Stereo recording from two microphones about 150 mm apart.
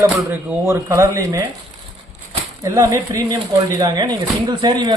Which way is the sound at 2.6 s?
20° right (ahead or behind).